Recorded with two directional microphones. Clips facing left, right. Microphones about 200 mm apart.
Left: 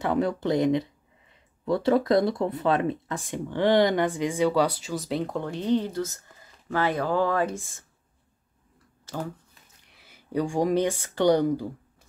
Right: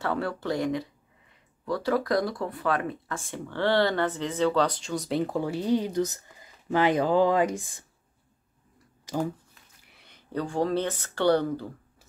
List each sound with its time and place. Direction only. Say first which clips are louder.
0.0 s speech: left 4 dB; 20° left (ahead or behind); by 7.8 s 15° right (ahead or behind)
9.0 s a sound: right 4 dB; 15° right (ahead or behind)
9.8 s speech: left 3 dB; 5° left (ahead or behind)